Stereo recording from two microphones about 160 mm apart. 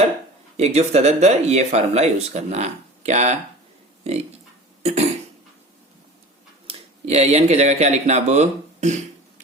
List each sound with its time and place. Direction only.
0.5 s speech: 40° right (ahead or behind)
4.8 s cough: 40° right (ahead or behind)
6.7 s speech: 40° right (ahead or behind)